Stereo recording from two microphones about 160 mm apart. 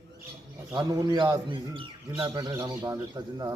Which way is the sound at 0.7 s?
25° right (ahead or behind).